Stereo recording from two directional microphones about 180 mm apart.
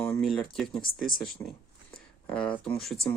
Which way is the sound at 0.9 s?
90° left.